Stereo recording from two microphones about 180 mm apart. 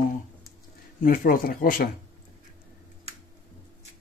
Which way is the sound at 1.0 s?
50° left (ahead or behind).